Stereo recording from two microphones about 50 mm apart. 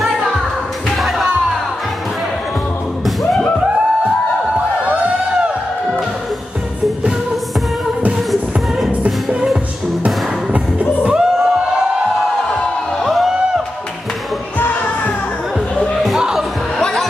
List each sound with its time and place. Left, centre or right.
0.8 s slam: centre
4.6 s a sound: right
8.3 s music: centre
10.0 s music: right
11.1 s music: centre
13.0 s music: centre
15.7 s a sound: centre
16.2 s music: centre
16.8 s music: centre